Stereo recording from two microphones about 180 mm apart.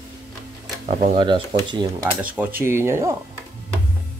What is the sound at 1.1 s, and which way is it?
Speech, 30° right (ahead or behind).